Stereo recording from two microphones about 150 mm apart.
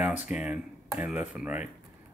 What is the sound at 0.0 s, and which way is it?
Speech, 10° right (ahead or behind).